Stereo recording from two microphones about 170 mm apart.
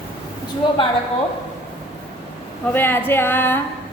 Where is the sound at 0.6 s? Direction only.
25° left (ahead or behind).